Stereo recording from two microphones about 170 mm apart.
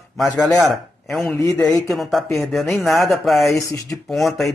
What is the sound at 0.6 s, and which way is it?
Speech, centre (ahead or behind).